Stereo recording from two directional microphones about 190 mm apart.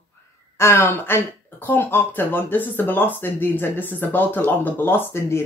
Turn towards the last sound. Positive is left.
turn(degrees=15)  # may be behind; listen again after turning